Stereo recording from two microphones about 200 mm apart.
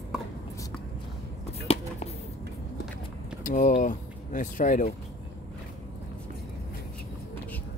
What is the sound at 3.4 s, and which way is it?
Vehicle, 40° left (ahead or behind).